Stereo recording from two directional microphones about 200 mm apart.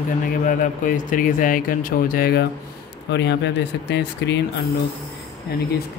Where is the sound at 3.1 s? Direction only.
60° left (ahead or behind).